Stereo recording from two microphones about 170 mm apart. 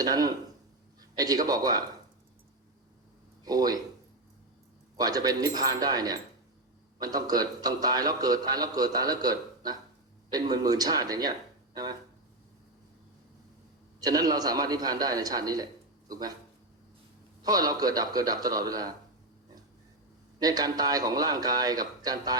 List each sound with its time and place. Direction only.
0.0 s a man's voice: 20° right (ahead or behind)
3.4 s speech: 20° right (ahead or behind)
4.9 s a man's voice: 20° right (ahead or behind)
14.0 s a man's voice: 25° right (ahead or behind)
17.4 s a man's voice: 20° right (ahead or behind)
20.4 s a man's voice: 20° right (ahead or behind)